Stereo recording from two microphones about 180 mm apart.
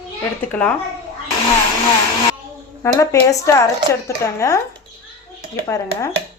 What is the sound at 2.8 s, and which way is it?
Speech, 15° left (ahead or behind).